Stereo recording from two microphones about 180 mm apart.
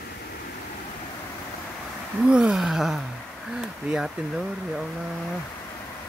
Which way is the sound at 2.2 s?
5° right (ahead or behind).